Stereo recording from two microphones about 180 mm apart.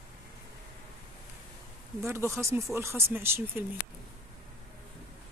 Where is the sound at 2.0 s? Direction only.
15° right (ahead or behind).